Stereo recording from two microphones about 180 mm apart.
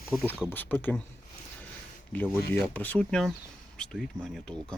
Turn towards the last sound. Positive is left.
turn(degrees=5)  # may be behind; listen again after turning